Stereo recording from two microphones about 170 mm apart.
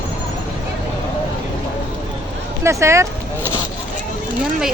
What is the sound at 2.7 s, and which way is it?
Speech, 15° right (ahead or behind).